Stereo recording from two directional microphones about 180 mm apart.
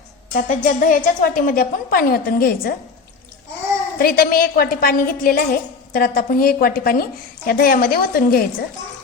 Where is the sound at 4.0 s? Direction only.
55° left (ahead or behind).